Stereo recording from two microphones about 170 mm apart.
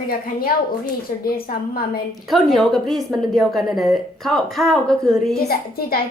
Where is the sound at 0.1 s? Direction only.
60° left (ahead or behind).